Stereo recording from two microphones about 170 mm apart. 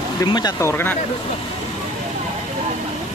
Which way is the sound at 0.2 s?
25° left (ahead or behind).